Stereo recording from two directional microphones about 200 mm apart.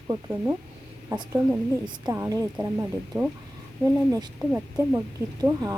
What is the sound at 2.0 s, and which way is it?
Speech, 15° right (ahead or behind).